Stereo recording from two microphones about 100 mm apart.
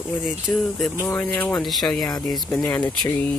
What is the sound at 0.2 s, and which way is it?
Speech, centre (ahead or behind).